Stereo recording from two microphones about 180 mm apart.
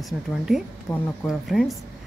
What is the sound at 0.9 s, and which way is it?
Speech, 20° left (ahead or behind).